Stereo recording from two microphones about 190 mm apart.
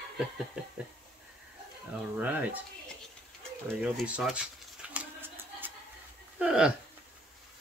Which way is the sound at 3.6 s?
Centre (ahead or behind).